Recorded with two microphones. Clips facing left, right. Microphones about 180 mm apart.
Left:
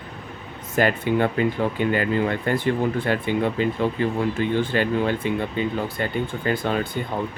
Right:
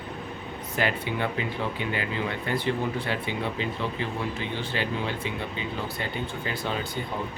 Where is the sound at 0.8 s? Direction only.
50° left (ahead or behind).